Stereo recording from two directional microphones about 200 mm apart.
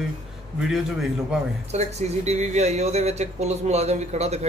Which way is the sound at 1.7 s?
35° right (ahead or behind).